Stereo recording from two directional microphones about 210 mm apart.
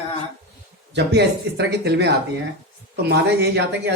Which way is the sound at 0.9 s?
55° right (ahead or behind).